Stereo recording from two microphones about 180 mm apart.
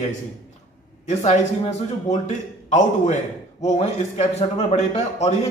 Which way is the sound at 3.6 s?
40° left (ahead or behind).